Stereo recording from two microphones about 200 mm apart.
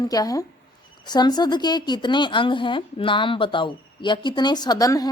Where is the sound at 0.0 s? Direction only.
20° left (ahead or behind).